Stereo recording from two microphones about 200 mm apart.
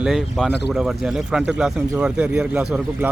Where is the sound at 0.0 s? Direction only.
Centre (ahead or behind).